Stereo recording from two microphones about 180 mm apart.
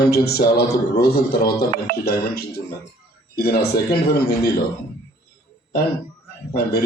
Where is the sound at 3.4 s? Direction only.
60° left (ahead or behind).